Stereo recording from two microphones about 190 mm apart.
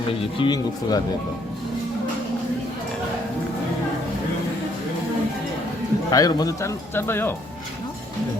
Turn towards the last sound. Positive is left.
turn(degrees=10)  # may be behind; listen again after turning